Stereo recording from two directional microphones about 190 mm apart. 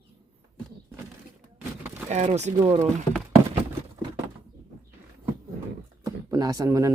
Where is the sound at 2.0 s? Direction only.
35° right (ahead or behind).